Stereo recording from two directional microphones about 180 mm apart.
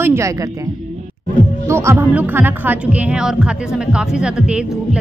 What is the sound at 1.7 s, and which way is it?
Speech, 15° right (ahead or behind).